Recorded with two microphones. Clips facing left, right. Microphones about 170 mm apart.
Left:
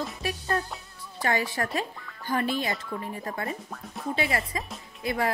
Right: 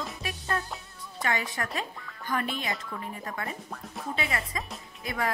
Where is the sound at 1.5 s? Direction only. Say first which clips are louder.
Left 4 dB; 35° left (ahead or behind).